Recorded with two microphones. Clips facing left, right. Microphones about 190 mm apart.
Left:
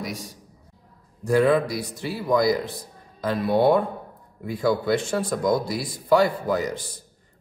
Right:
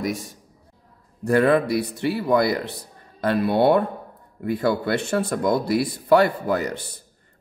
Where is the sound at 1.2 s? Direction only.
60° right (ahead or behind).